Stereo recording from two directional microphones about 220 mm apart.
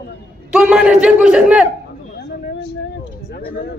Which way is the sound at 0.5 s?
5° right (ahead or behind).